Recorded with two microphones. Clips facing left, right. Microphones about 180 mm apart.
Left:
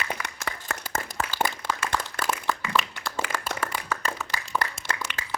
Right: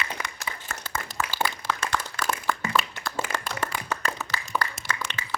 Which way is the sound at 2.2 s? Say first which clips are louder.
Even; 55° left (ahead or behind).